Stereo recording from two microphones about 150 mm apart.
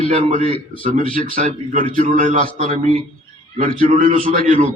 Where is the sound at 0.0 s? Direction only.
55° right (ahead or behind).